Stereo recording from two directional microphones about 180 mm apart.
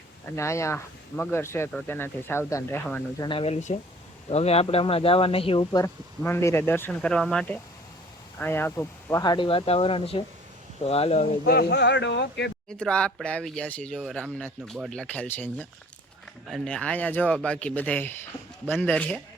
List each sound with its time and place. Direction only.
0.3 s speech: 15° left (ahead or behind)
3.2 s speech: 30° left (ahead or behind)
6.2 s speech: 10° left (ahead or behind); by 11.3 s 35° left (ahead or behind)
11.4 s speech: 65° left (ahead or behind)
12.6 s speech: 5° left (ahead or behind)